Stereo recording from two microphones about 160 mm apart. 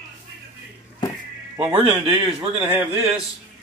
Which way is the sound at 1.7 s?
35° right (ahead or behind).